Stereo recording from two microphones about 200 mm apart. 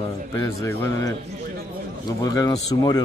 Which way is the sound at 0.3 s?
15° left (ahead or behind).